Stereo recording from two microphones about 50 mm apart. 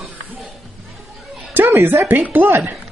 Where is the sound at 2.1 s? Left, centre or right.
Right.